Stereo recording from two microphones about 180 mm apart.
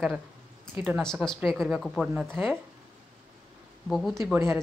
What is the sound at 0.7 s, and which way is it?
Speech, 10° right (ahead or behind).